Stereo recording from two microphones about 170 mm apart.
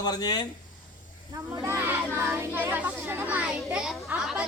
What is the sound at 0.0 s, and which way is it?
Speech, 25° left (ahead or behind).